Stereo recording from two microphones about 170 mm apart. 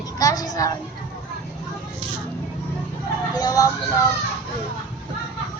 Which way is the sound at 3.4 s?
20° left (ahead or behind).